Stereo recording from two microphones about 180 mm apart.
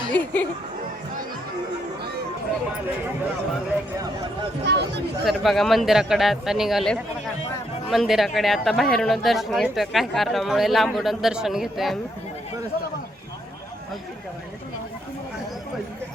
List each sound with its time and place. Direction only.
0.1 s speech: 10° left (ahead or behind)
4.7 s speech: 70° right (ahead or behind)
5.2 s speech: centre (ahead or behind)